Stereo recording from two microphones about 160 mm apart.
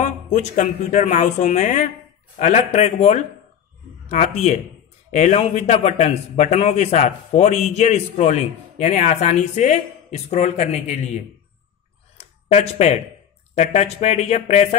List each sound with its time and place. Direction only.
0.0 s a man's voice: 50° left (ahead or behind)
12.2 s a sound: 45° left (ahead or behind)
13.6 s a man's voice: 45° left (ahead or behind)